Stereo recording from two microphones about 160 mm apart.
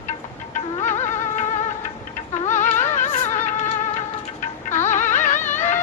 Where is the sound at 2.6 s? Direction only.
50° left (ahead or behind).